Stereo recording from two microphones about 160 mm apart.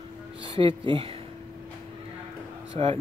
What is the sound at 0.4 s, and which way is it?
Speech, 30° right (ahead or behind).